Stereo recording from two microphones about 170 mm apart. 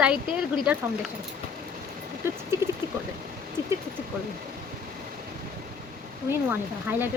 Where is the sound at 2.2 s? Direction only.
15° right (ahead or behind).